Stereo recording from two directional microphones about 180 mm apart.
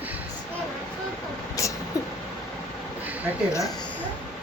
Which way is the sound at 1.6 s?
20° left (ahead or behind).